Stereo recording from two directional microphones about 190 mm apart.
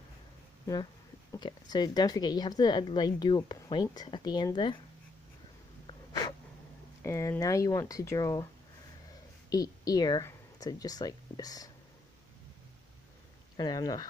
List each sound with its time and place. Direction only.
1.3 s speech: 20° left (ahead or behind)
7.0 s speech: 15° left (ahead or behind)
9.5 s speech: 20° left (ahead or behind)
13.6 s speech: 20° left (ahead or behind)